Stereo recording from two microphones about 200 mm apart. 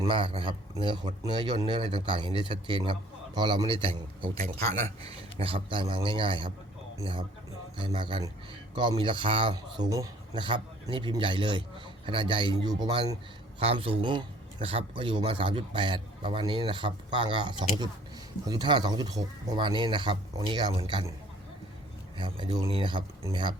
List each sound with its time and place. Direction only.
0.0 s a man's voice: 25° right (ahead or behind)
22.2 s a man's voice: 25° right (ahead or behind)